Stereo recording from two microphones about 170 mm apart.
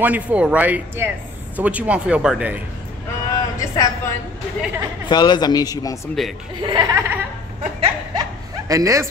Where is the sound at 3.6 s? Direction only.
20° left (ahead or behind).